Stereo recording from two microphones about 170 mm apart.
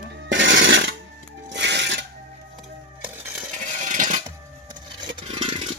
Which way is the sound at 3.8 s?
50° right (ahead or behind).